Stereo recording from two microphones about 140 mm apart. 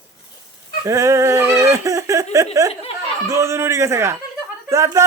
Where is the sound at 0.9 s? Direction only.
20° right (ahead or behind).